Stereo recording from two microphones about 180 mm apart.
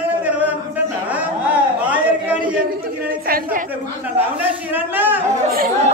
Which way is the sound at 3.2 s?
55° right (ahead or behind).